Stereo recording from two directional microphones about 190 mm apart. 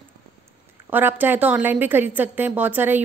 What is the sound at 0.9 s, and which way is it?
A woman's voice, 10° right (ahead or behind).